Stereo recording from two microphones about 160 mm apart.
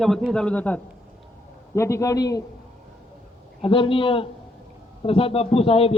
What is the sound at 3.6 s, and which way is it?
A man's voice, 35° left (ahead or behind).